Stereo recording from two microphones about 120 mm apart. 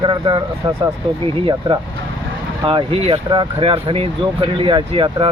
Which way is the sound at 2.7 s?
45° right (ahead or behind).